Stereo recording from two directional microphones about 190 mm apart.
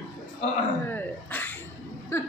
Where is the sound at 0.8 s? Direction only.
10° left (ahead or behind).